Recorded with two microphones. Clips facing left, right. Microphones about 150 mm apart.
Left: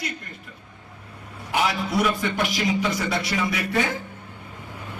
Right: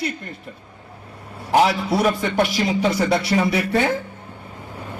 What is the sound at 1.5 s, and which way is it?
A man's voice, 35° right (ahead or behind).